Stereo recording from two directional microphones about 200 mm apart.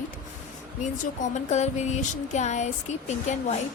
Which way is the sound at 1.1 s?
35° left (ahead or behind).